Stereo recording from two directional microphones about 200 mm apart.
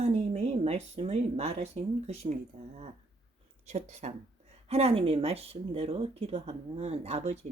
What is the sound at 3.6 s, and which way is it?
Speech, 35° right (ahead or behind).